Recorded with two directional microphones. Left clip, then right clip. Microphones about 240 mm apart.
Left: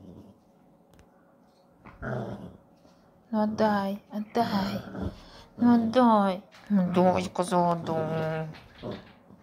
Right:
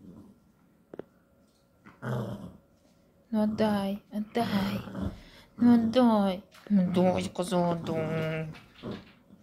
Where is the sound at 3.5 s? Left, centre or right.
Centre.